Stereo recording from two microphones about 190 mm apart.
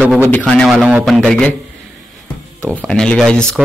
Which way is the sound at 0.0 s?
10° right (ahead or behind).